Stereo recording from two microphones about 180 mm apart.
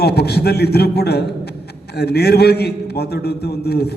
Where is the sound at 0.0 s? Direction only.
65° left (ahead or behind).